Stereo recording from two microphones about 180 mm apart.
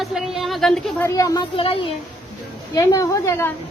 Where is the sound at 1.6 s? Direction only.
30° left (ahead or behind).